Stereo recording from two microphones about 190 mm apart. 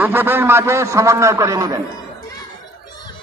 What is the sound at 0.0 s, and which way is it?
A man's voice, 10° right (ahead or behind).